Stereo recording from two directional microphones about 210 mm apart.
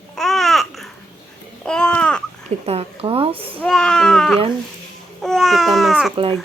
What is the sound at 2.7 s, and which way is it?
Speech, 25° right (ahead or behind).